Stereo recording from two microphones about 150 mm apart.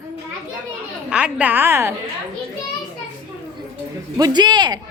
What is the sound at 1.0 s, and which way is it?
Speech, 10° right (ahead or behind).